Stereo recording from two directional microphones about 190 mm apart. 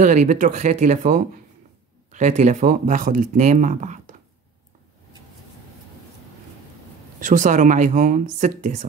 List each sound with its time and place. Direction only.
0.0 s speech: 40° right (ahead or behind)
7.2 s speech: 45° right (ahead or behind)